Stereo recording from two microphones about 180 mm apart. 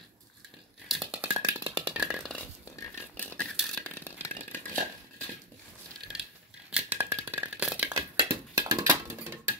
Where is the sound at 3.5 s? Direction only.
Centre (ahead or behind).